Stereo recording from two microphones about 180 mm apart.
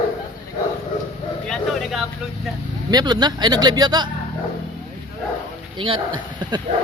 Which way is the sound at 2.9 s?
25° right (ahead or behind).